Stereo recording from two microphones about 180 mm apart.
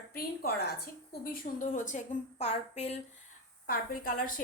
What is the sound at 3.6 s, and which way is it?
Speech, 55° left (ahead or behind).